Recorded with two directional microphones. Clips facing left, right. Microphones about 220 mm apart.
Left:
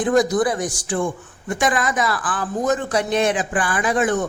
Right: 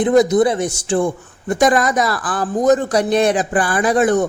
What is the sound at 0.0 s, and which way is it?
A man's voice, 20° right (ahead or behind).